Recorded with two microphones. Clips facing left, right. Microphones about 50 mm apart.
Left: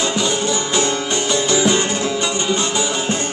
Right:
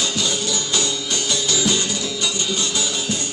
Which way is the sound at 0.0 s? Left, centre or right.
Left.